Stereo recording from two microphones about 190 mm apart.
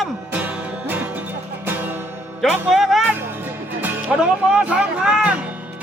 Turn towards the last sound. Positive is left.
turn(degrees=-5)  # may be behind; listen again after turning